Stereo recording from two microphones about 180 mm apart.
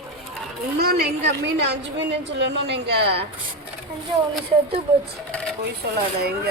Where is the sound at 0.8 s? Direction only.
60° right (ahead or behind).